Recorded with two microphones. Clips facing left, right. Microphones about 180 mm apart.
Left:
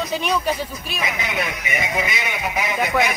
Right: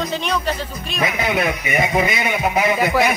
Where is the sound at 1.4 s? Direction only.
55° right (ahead or behind).